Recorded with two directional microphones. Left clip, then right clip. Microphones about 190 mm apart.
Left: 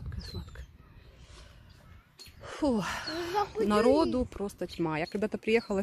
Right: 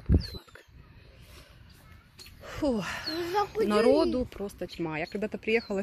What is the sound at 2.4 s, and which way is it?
Speech, 15° left (ahead or behind).